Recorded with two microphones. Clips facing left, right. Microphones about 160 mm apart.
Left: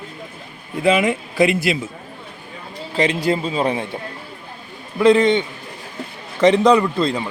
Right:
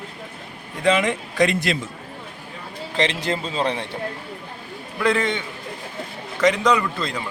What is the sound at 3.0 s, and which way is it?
Speech, 10° left (ahead or behind).